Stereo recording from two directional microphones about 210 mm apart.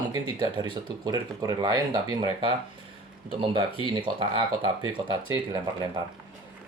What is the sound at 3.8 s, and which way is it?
Speech, 25° right (ahead or behind).